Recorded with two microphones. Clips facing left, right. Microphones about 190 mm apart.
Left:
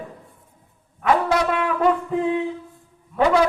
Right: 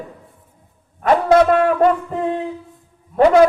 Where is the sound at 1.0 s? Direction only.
45° right (ahead or behind).